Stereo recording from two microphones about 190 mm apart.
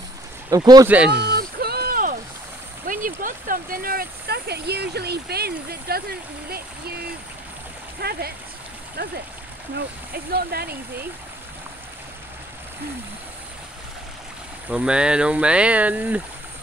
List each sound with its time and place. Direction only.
0.5 s speech: 20° right (ahead or behind)
0.8 s speech: 5° right (ahead or behind)
1.2 s a sound: 55° right (ahead or behind)
2.9 s speech: 45° right (ahead or behind)
8.0 s speech: 55° right (ahead or behind)
14.7 s speech: 5° right (ahead or behind)